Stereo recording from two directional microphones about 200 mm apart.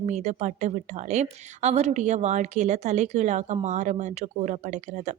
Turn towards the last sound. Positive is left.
turn(degrees=-35)  # may be behind; listen again after turning